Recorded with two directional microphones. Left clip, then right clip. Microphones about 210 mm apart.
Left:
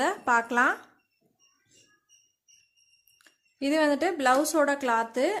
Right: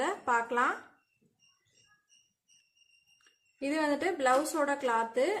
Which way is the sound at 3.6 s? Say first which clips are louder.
Left 6 dB; 40° left (ahead or behind).